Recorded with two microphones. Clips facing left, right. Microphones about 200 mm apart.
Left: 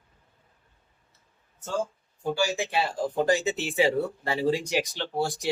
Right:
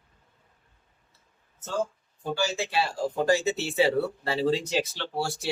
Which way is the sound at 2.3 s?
15° left (ahead or behind).